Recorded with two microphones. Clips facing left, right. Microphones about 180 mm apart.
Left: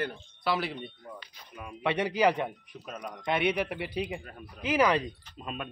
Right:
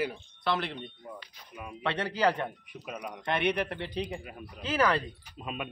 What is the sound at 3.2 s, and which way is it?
Speech, 10° left (ahead or behind).